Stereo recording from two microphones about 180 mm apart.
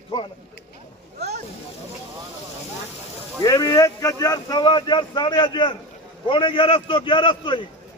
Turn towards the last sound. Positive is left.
turn(degrees=25)  # may be behind; listen again after turning